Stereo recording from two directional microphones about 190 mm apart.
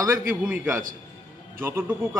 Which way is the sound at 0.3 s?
10° right (ahead or behind).